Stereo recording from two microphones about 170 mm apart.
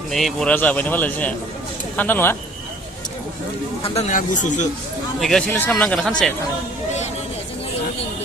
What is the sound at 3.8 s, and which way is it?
Speech, 40° left (ahead or behind).